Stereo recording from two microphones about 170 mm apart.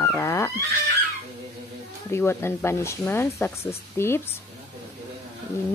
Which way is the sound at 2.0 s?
15° left (ahead or behind).